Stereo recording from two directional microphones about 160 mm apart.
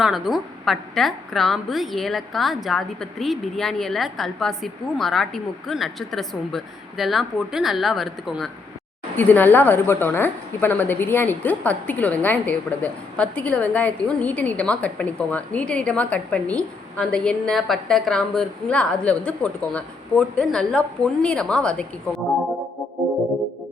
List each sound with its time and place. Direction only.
0.0 s a woman's voice: centre (ahead or behind)
9.1 s a woman's voice: 10° left (ahead or behind)